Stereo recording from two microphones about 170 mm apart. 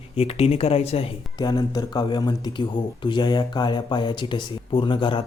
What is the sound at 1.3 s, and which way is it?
Speech, 25° left (ahead or behind).